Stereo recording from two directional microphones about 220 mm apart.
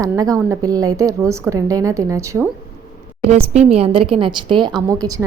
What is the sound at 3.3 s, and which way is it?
Speech, 25° right (ahead or behind).